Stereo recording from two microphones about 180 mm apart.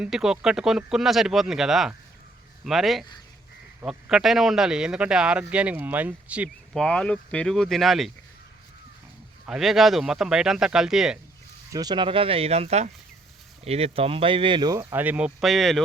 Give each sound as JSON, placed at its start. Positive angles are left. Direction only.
{"t": 0.0, "sound": "speech", "side_deg": -5}
{"t": 6.7, "sound": "speech", "side_deg": 5}
{"t": 9.5, "sound": "speech", "side_deg": 0}
{"t": 11.7, "sound": "speech", "side_deg": -20}